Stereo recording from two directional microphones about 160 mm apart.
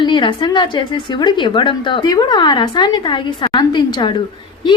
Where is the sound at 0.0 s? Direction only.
30° left (ahead or behind).